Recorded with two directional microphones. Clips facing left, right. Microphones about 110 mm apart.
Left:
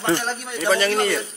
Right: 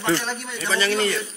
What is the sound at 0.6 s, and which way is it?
Speech, 50° left (ahead or behind).